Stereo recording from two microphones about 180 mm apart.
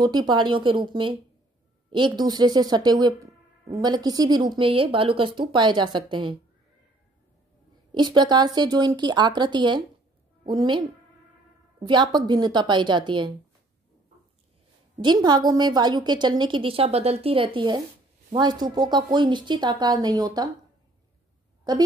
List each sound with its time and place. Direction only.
0.0 s a woman's voice: 25° right (ahead or behind)
7.9 s a woman's voice: 25° right (ahead or behind)
11.8 s a woman's voice: 25° right (ahead or behind)
15.0 s a woman's voice: 25° right (ahead or behind)